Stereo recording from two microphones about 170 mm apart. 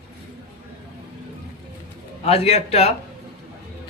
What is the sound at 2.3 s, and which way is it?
Speech, 40° left (ahead or behind).